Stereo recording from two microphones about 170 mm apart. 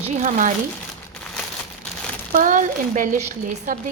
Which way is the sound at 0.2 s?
45° right (ahead or behind).